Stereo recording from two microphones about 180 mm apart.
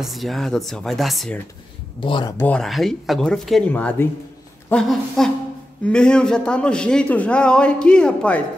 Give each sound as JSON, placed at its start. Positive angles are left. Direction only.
{"t": 0.0, "sound": "a man's voice", "side_deg": 0}
{"t": 2.0, "sound": "speech", "side_deg": 25}
{"t": 2.3, "sound": "a man's voice", "side_deg": 10}